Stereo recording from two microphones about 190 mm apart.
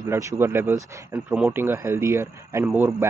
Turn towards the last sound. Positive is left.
turn(degrees=-10)  # may be behind; listen again after turning